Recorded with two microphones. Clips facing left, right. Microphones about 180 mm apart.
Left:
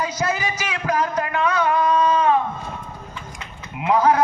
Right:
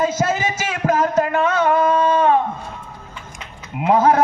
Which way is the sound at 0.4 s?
45° right (ahead or behind).